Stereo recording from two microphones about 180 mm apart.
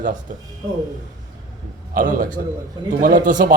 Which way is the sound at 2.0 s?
50° right (ahead or behind).